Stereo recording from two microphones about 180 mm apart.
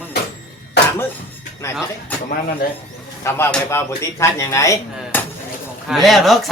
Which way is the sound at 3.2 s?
15° left (ahead or behind).